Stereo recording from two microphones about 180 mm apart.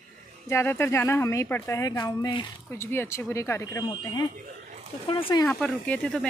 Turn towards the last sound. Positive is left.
turn(degrees=5)  # may be behind; listen again after turning